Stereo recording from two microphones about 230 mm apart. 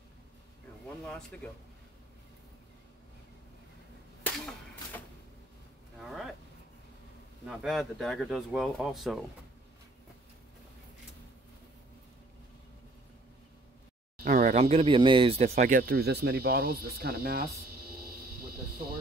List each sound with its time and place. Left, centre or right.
1.0 s speech: centre
4.2 s a sound: centre
7.4 s speech: centre
14.1 s speech: right
15.5 s cricket: right